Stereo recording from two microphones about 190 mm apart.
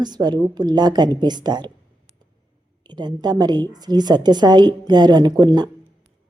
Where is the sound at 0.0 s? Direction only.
20° right (ahead or behind).